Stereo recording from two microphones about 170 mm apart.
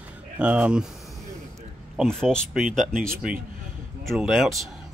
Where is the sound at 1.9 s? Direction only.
Centre (ahead or behind).